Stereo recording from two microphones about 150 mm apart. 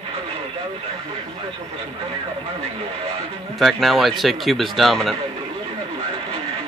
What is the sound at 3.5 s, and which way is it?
Speech, centre (ahead or behind).